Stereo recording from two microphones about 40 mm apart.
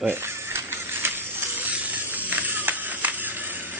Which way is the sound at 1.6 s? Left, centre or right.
Right.